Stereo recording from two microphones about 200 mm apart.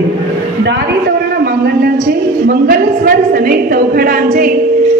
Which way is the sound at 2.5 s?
45° right (ahead or behind).